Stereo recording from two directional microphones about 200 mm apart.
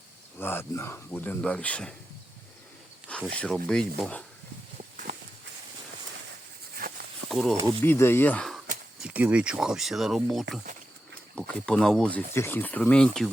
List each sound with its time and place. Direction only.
0.3 s speech: 10° left (ahead or behind)
3.1 s speech: 5° left (ahead or behind)
6.8 s a sound: 45° right (ahead or behind)
7.3 s speech: centre (ahead or behind)
7.9 s speech: 10° left (ahead or behind)